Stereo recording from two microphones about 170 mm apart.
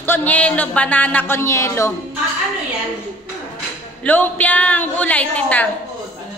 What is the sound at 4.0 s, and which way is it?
A woman's voice, 10° left (ahead or behind).